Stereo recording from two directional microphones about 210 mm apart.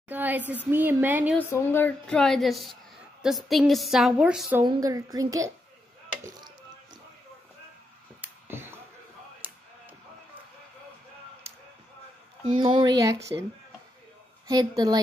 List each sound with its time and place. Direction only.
0.1 s a sound: 10° right (ahead or behind)
0.7 s speech: 10° right (ahead or behind)
1.5 s a woman's voice: 10° left (ahead or behind); by 4.6 s 5° right (ahead or behind)
4.6 s speech: 15° right (ahead or behind)
8.2 s a sound: 10° right (ahead or behind)
9.4 s music: 10° right (ahead or behind)
12.5 s speech: 20° right (ahead or behind)
14.5 s a woman's voice: 20° right (ahead or behind)